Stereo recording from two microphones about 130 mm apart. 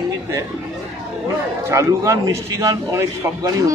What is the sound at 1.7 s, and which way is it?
A man's voice, 25° right (ahead or behind).